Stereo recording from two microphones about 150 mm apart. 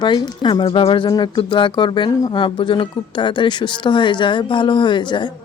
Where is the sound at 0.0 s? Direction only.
30° left (ahead or behind).